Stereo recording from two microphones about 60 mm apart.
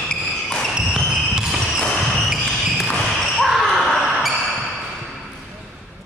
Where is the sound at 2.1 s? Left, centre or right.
Centre.